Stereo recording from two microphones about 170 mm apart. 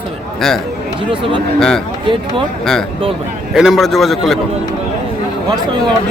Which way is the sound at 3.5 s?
Centre (ahead or behind).